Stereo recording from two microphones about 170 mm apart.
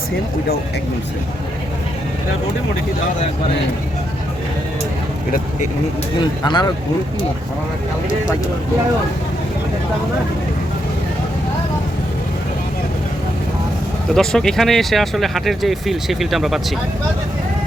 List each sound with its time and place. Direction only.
6.4 s speech: 25° left (ahead or behind)
14.1 s speech: 5° left (ahead or behind)